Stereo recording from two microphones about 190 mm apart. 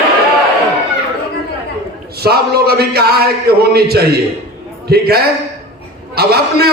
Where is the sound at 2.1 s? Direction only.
55° right (ahead or behind).